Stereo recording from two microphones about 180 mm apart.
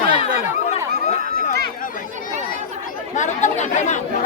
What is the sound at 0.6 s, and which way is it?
Chatter, 35° left (ahead or behind).